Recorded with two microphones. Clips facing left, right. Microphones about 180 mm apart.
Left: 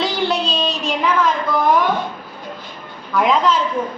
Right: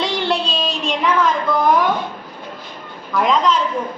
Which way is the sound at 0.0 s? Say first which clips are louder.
Even; centre (ahead or behind).